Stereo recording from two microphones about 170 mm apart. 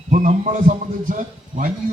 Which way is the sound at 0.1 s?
45° right (ahead or behind).